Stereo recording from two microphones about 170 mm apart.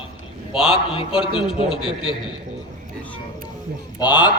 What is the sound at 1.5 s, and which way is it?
Speech, 30° left (ahead or behind).